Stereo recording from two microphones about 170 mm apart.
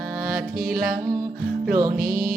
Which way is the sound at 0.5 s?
60° right (ahead or behind).